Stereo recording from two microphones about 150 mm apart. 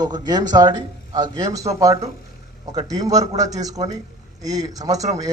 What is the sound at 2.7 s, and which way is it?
A man's voice, 25° right (ahead or behind).